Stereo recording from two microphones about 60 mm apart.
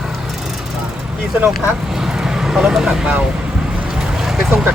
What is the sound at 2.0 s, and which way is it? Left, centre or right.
Vehicle, centre.